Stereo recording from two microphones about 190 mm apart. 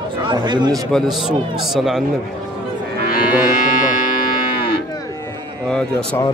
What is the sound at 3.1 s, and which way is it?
Livestock, 50° left (ahead or behind).